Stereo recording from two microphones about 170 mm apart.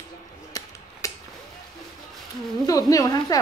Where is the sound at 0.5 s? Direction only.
20° left (ahead or behind).